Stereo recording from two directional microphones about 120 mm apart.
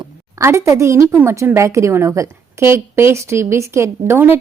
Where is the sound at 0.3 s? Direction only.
25° right (ahead or behind).